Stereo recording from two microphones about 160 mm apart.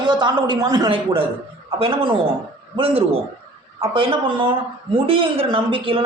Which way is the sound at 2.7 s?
35° right (ahead or behind).